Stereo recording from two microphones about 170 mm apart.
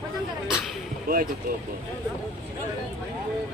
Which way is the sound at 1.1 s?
60° right (ahead or behind).